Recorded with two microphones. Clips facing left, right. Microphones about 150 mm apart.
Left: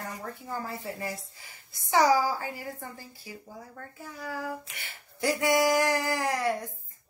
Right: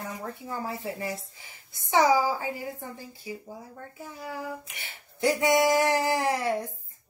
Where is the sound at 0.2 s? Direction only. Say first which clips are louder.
Right 2 dB; 20° right (ahead or behind).